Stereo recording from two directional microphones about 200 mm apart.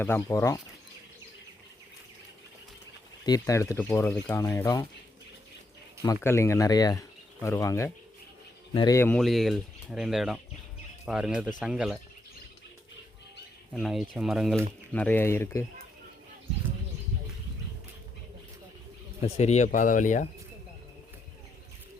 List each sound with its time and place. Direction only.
0.0 s speech: 15° left (ahead or behind)
3.2 s speech: 15° left (ahead or behind)
6.0 s speech: 15° left (ahead or behind); by 11.9 s 5° right (ahead or behind)
13.7 s speech: centre (ahead or behind)
14.9 s speech: 10° left (ahead or behind)
19.2 s speech: 35° left (ahead or behind)